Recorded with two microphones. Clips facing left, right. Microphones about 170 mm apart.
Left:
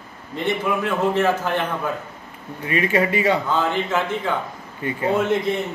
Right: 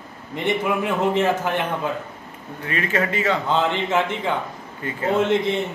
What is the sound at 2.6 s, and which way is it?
Speech, 10° left (ahead or behind).